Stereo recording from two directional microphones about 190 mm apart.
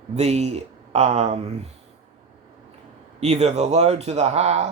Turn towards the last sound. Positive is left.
turn(degrees=-35)  # may be behind; listen again after turning